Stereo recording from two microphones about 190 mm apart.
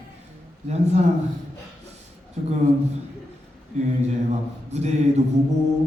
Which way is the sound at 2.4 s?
40° right (ahead or behind).